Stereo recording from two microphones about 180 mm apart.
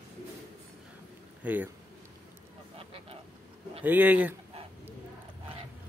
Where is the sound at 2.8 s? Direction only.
30° right (ahead or behind).